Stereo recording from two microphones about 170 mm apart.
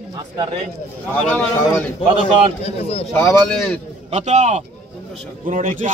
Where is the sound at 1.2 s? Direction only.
10° left (ahead or behind).